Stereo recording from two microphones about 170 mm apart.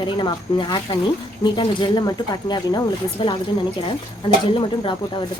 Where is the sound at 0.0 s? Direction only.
25° left (ahead or behind).